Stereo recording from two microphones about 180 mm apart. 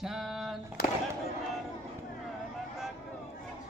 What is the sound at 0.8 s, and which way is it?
Speech, 55° left (ahead or behind).